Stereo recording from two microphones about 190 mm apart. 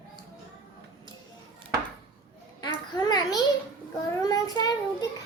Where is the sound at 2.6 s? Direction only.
20° left (ahead or behind).